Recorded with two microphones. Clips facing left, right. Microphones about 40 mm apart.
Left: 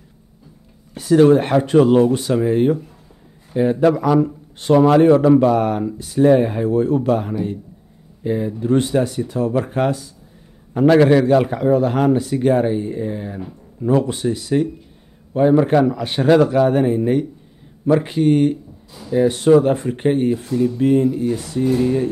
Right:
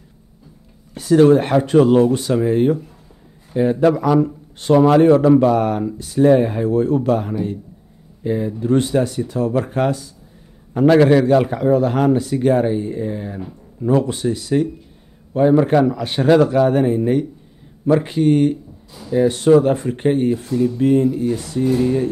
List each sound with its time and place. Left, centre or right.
0.9 s a man's voice: centre